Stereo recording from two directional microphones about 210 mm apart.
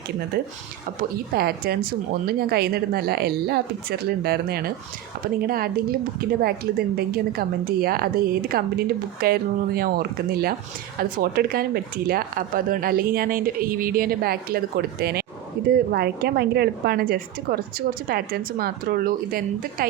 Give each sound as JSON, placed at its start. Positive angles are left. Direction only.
{"t": 1.3, "sound": "speech", "side_deg": -45}